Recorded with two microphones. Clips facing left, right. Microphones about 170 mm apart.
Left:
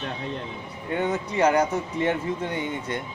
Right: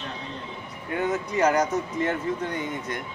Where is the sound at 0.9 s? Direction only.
25° left (ahead or behind).